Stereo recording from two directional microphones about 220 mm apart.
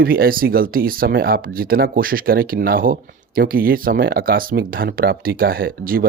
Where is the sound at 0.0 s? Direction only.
40° right (ahead or behind).